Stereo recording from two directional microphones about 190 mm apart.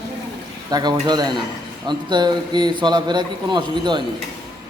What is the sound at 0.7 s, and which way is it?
A man's voice, 20° right (ahead or behind).